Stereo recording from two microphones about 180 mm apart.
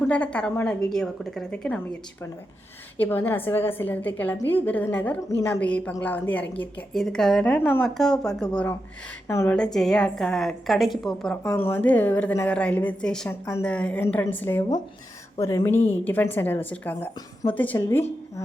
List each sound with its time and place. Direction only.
0.0 s a woman's voice: 5° left (ahead or behind)
9.7 s a woman's voice: 5° left (ahead or behind)